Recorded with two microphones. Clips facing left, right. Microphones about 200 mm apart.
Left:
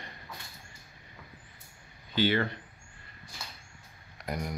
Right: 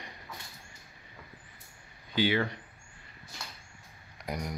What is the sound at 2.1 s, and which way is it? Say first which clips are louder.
Speech: left 1 dB; 10° right (ahead or behind).